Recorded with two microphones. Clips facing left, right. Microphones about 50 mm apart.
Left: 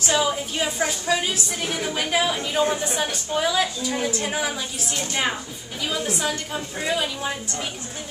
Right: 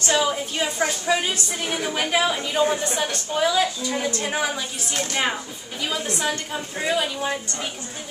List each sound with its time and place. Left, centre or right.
0.0 s a woman's voice: centre
1.0 s a woman's voice: centre